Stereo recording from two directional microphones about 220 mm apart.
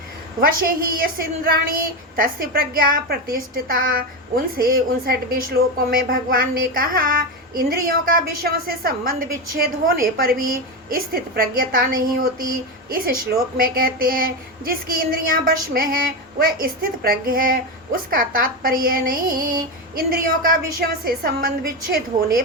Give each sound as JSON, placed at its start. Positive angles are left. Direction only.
{"t": 0.4, "sound": "a woman's voice", "side_deg": -40}